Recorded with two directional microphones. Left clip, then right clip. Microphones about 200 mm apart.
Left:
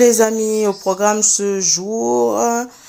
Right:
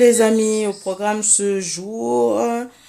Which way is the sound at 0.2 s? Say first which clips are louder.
Left 1 dB; 10° left (ahead or behind).